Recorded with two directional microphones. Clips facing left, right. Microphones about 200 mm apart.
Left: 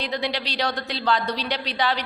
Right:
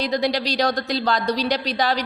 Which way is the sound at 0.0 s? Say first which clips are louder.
Right 6 dB; 40° right (ahead or behind).